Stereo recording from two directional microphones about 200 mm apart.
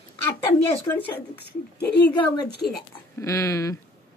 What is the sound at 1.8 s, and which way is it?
Speech, 55° left (ahead or behind).